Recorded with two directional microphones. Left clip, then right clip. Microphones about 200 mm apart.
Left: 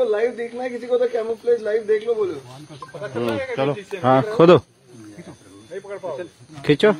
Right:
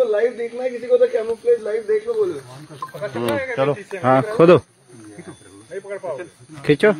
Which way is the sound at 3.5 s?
30° right (ahead or behind).